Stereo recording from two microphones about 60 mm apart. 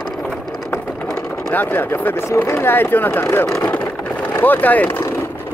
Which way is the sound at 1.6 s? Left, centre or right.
Left.